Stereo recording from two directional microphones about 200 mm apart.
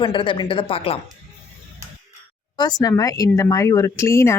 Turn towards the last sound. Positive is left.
turn(degrees=15)  # may be behind; listen again after turning